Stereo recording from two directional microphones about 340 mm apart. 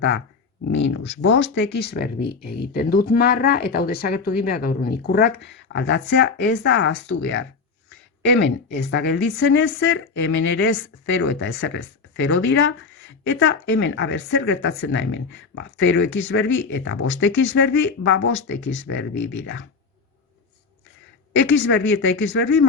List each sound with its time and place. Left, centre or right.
0.7 s a woman's voice: left
21.3 s a woman's voice: left